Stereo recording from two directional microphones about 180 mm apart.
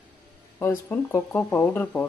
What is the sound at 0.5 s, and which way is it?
A woman's voice, 15° left (ahead or behind).